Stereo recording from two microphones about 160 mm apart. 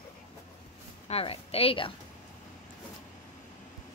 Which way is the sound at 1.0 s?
40° left (ahead or behind).